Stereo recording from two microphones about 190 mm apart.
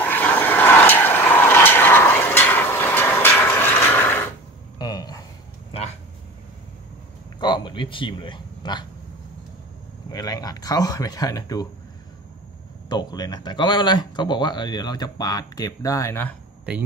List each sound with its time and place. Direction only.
0.0 s vehicle: 10° left (ahead or behind)
4.7 s a sound: 20° left (ahead or behind)
5.7 s a sound: 30° left (ahead or behind)
7.3 s speech: 25° left (ahead or behind)
10.1 s speech: 20° left (ahead or behind)
12.9 s speech: 20° left (ahead or behind)